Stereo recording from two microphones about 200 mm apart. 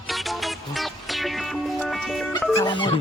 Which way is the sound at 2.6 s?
25° left (ahead or behind).